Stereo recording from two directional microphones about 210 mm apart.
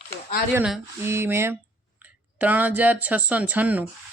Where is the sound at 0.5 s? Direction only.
10° right (ahead or behind).